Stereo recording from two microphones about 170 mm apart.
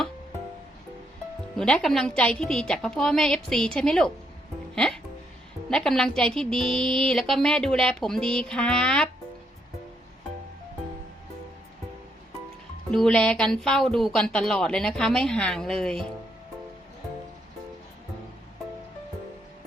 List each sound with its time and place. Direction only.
1.5 s a woman's voice: 5° left (ahead or behind)
12.9 s a woman's voice: 5° left (ahead or behind)